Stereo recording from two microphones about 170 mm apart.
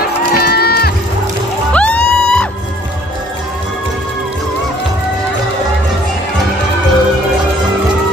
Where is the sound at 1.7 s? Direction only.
5° left (ahead or behind).